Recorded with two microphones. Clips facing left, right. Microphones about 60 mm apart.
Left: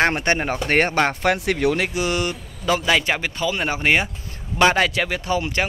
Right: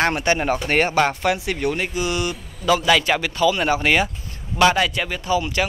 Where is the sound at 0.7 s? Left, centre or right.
Left.